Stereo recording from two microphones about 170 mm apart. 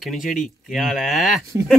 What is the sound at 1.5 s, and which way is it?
Speech, 15° right (ahead or behind).